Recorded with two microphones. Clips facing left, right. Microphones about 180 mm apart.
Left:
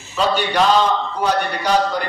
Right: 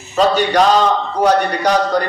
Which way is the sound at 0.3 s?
40° right (ahead or behind).